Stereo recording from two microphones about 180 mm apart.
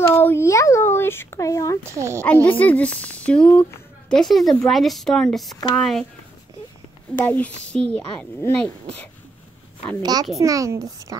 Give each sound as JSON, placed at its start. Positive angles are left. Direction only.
{"t": 0.0, "sound": "speech", "side_deg": 10}
{"t": 1.8, "sound": "a child's voice", "side_deg": -15}
{"t": 2.4, "sound": "a woman's voice", "side_deg": 10}
{"t": 7.2, "sound": "speech", "side_deg": 10}
{"t": 10.3, "sound": "a child's voice", "side_deg": -20}